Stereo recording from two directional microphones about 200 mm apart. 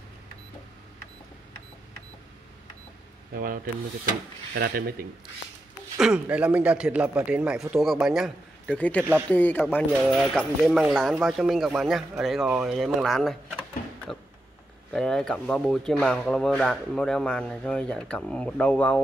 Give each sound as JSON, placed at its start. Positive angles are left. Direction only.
{"t": 3.3, "sound": "speech", "side_deg": -50}
{"t": 5.9, "sound": "speech", "side_deg": -5}